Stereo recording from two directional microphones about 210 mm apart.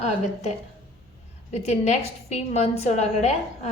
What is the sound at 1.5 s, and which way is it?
A woman's voice, 35° left (ahead or behind).